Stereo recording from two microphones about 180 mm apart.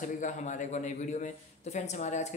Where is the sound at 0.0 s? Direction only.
45° left (ahead or behind).